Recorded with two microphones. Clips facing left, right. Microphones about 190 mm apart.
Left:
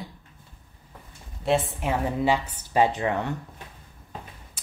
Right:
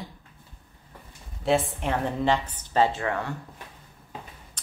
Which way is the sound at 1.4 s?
Centre (ahead or behind).